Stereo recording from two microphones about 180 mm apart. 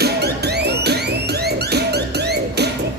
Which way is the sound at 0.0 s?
65° right (ahead or behind).